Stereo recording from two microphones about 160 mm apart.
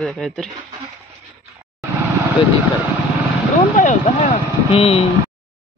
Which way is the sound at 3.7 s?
50° left (ahead or behind).